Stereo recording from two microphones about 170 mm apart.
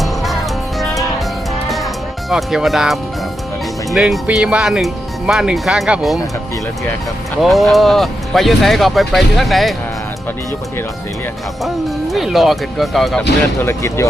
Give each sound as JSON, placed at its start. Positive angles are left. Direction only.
{"t": 2.3, "sound": "speech", "side_deg": 0}
{"t": 7.4, "sound": "speech", "side_deg": 0}
{"t": 12.1, "sound": "speech", "side_deg": 0}
{"t": 13.6, "sound": "speech", "side_deg": 15}